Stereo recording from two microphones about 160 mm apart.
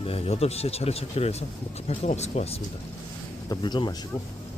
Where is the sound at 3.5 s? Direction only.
30° left (ahead or behind).